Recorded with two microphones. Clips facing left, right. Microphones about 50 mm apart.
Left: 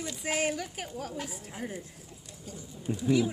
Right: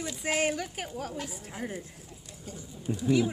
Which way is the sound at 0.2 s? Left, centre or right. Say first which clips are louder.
Right 2 dB; right.